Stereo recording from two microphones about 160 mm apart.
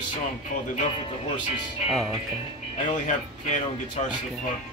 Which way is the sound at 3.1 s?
50° left (ahead or behind).